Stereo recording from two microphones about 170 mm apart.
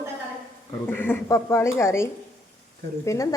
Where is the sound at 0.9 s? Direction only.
10° left (ahead or behind).